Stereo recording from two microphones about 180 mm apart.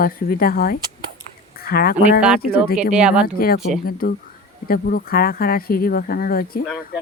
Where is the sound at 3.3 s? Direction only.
55° left (ahead or behind).